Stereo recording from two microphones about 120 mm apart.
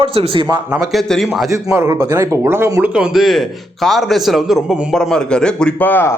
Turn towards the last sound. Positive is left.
turn(degrees=15)  # may be behind; listen again after turning